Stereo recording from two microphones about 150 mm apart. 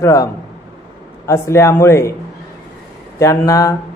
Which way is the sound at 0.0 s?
25° left (ahead or behind).